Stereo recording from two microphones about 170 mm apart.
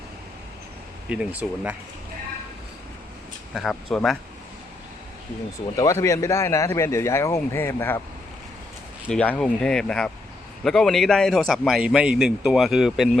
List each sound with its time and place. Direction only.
1.0 s speech: 5° right (ahead or behind)
3.5 s a man's voice: centre (ahead or behind)
5.7 s speech: 20° left (ahead or behind)
9.0 s a man's voice: 10° left (ahead or behind)